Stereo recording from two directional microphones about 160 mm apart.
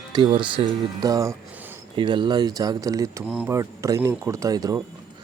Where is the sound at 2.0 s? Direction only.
30° right (ahead or behind).